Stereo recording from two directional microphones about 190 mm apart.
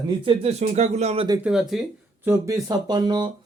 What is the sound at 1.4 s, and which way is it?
Speech, centre (ahead or behind).